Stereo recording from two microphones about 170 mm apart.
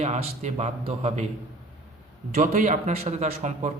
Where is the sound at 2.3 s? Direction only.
50° right (ahead or behind).